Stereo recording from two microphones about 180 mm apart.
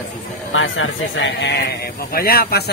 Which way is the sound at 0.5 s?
90° left.